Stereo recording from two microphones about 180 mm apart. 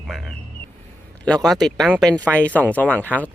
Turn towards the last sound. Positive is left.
turn(degrees=10)  # may be behind; listen again after turning